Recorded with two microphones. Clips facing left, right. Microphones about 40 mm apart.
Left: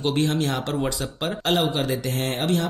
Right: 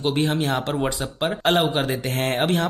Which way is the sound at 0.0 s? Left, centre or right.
Centre.